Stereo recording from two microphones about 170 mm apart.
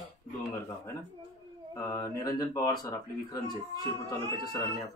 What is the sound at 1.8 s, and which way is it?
Speech, 20° left (ahead or behind).